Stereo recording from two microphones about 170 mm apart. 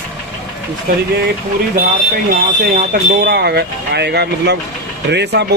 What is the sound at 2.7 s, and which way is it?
Speech, 65° right (ahead or behind).